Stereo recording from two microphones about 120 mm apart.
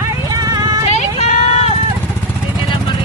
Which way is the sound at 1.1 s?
60° left (ahead or behind).